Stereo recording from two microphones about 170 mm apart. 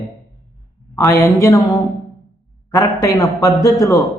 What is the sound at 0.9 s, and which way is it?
Speech, 15° left (ahead or behind).